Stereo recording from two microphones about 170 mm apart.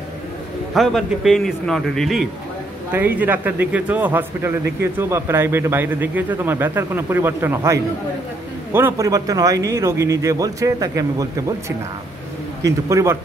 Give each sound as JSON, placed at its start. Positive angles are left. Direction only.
{"t": 0.7, "sound": "a man's voice", "side_deg": 0}
{"t": 2.9, "sound": "a man's voice", "side_deg": -10}
{"t": 12.6, "sound": "speech", "side_deg": -20}